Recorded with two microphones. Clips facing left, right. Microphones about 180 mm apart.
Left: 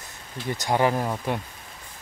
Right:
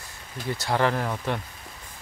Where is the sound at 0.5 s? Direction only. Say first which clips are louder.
Left 2 dB; 15° left (ahead or behind).